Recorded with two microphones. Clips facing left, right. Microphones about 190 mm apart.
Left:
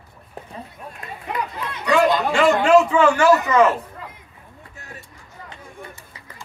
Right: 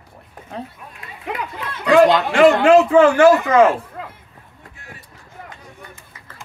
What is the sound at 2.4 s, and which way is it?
Speech, 55° right (ahead or behind).